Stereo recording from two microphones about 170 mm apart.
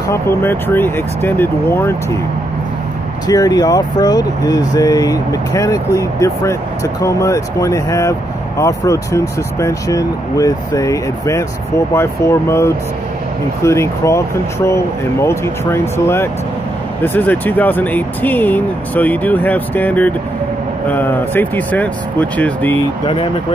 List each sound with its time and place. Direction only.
0.1 s speech: 15° left (ahead or behind)
3.3 s speech: 20° left (ahead or behind)
17.0 s speech: 10° left (ahead or behind)